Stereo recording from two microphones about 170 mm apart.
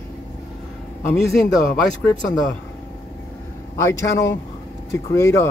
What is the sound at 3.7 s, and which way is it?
A man's voice, 15° left (ahead or behind).